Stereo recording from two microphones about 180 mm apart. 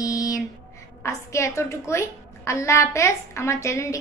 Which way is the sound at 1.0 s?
15° left (ahead or behind).